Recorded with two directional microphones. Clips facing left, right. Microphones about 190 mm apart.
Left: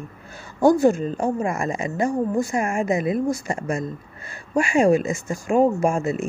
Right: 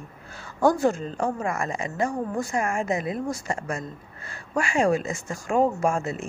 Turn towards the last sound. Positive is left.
turn(degrees=15)  # may be behind; listen again after turning